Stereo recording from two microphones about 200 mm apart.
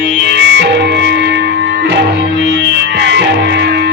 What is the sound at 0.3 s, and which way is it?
Music, 65° right (ahead or behind).